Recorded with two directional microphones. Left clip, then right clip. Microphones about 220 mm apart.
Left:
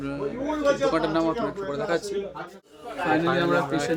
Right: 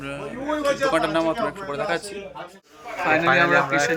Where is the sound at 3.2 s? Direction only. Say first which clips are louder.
Right 9 dB; 5° right (ahead or behind).